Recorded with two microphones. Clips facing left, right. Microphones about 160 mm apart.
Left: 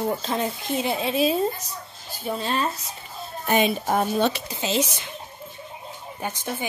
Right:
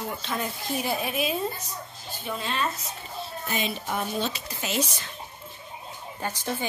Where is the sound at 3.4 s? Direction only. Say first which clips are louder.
Left 10 dB; 60° left (ahead or behind).